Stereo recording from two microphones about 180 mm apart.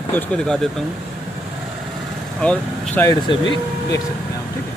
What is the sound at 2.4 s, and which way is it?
Speech, 10° left (ahead or behind).